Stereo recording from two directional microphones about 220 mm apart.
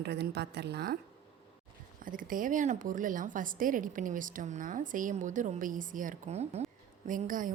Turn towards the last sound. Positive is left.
turn(degrees=-35)  # may be behind; listen again after turning